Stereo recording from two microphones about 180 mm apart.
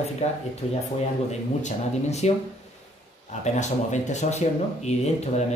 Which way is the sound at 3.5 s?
40° left (ahead or behind).